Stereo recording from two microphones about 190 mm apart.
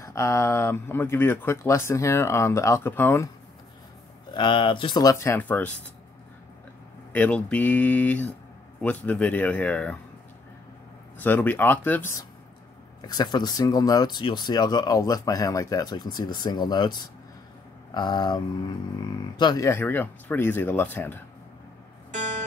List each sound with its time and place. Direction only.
0.0 s speech: 15° left (ahead or behind)
4.3 s speech: 25° left (ahead or behind); by 5.7 s 10° left (ahead or behind)
7.1 s speech: 10° left (ahead or behind)
11.1 s speech: 10° left (ahead or behind)